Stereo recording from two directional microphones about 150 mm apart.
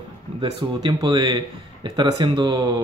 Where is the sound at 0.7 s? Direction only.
30° right (ahead or behind).